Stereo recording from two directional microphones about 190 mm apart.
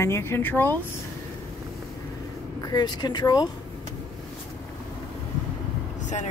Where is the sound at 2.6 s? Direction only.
20° left (ahead or behind).